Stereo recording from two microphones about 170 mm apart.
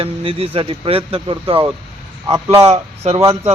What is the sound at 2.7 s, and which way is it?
Speech, 35° right (ahead or behind).